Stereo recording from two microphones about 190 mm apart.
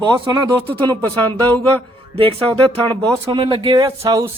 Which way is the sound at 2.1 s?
25° right (ahead or behind).